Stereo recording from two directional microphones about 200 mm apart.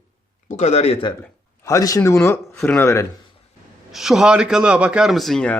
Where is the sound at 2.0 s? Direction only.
15° left (ahead or behind).